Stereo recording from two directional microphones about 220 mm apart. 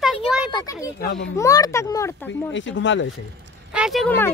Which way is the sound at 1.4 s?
15° left (ahead or behind).